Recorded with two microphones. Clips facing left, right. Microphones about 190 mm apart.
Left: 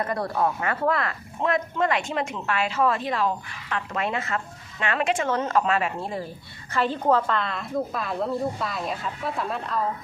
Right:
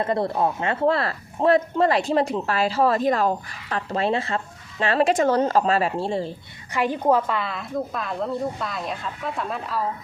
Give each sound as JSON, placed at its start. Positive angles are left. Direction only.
{"t": 0.0, "sound": "speech", "side_deg": -25}
{"t": 6.7, "sound": "a woman's voice", "side_deg": -15}